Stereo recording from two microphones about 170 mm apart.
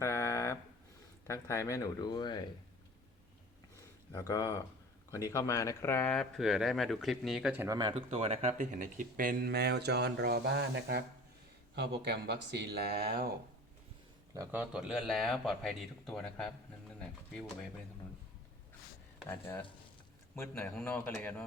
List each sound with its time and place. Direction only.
0.0 s a sound: 15° left (ahead or behind)
1.3 s speech: 15° left (ahead or behind)
3.8 s a sound: 15° left (ahead or behind)
5.3 s speech: 15° left (ahead or behind); by 7.7 s 5° right (ahead or behind)
7.7 s speech: 25° right (ahead or behind); by 13.2 s 65° right (ahead or behind)
14.3 s speech: 15° right (ahead or behind); by 17.7 s 5° left (ahead or behind)
19.3 s a man's voice: 15° left (ahead or behind)